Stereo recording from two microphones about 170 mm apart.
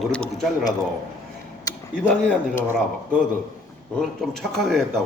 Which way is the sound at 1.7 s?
20° left (ahead or behind).